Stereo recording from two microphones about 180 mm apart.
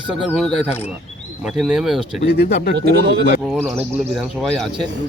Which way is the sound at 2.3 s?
60° left (ahead or behind).